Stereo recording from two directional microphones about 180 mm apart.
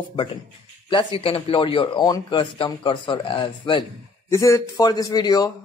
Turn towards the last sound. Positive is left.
turn(degrees=20)  # may be behind; listen again after turning